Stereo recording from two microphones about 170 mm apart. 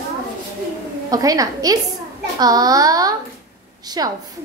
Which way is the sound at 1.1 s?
20° right (ahead or behind).